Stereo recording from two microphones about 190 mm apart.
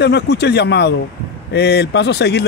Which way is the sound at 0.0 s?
60° left (ahead or behind).